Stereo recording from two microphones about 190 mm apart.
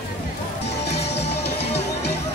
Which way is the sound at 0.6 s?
60° left (ahead or behind).